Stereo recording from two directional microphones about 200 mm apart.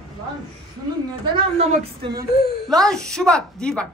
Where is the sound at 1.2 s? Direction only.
25° right (ahead or behind).